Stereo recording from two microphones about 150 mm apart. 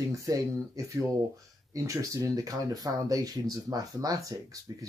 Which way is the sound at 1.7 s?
20° right (ahead or behind).